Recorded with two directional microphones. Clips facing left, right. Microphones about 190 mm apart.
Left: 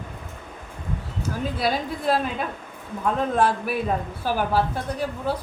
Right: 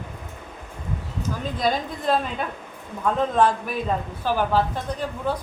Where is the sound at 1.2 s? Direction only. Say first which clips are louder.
Right 1 dB; 5° left (ahead or behind).